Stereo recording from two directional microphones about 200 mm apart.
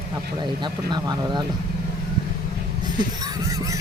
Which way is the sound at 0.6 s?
20° right (ahead or behind).